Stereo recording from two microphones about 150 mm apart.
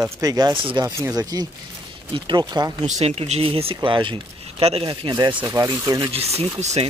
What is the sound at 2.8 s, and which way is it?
Speech, 50° right (ahead or behind).